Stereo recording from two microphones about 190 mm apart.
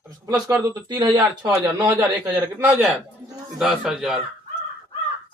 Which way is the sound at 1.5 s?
10° right (ahead or behind).